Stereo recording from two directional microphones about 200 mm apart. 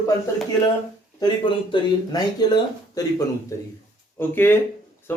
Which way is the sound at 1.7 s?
25° left (ahead or behind).